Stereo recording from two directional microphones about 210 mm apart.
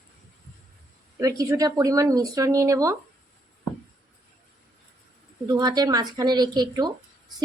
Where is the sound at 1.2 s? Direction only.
15° right (ahead or behind).